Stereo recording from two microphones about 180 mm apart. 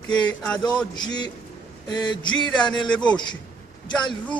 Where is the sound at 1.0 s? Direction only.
25° left (ahead or behind).